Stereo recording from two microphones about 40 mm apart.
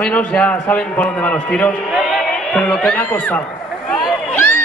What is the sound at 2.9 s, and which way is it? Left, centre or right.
Speech, left.